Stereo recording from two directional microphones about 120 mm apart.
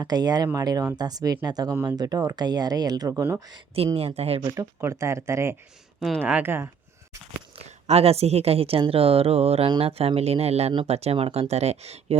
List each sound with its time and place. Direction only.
0.0 s speech: 35° right (ahead or behind)
3.9 s speech: 60° right (ahead or behind)
4.5 s speech: 25° right (ahead or behind)
6.0 s speech: 5° left (ahead or behind)
6.2 s speech: 15° right (ahead or behind)
7.9 s speech: 60° right (ahead or behind)